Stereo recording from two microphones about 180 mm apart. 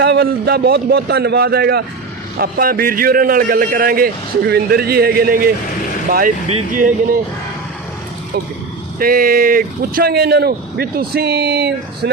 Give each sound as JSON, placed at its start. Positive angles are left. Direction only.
{"t": 0.0, "sound": "a man's voice", "side_deg": -65}
{"t": 9.0, "sound": "a man's voice", "side_deg": -55}